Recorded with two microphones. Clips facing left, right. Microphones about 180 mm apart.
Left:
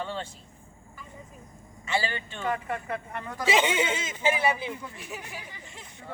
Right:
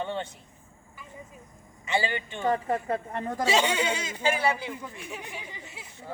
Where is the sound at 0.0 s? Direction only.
20° right (ahead or behind).